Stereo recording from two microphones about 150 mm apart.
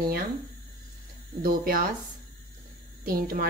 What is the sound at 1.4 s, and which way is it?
Speech, 75° right (ahead or behind).